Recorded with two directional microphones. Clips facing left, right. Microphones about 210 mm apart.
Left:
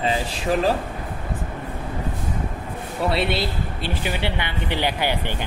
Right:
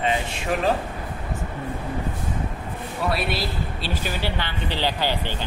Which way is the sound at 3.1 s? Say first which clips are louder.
Left 3 dB; 25° left (ahead or behind).